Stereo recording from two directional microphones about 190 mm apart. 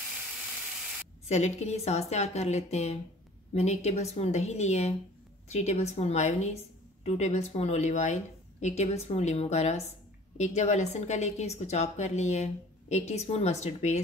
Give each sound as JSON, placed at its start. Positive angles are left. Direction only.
{"t": 1.3, "sound": "a woman's voice", "side_deg": 35}